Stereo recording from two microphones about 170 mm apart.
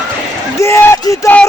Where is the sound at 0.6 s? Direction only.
15° left (ahead or behind).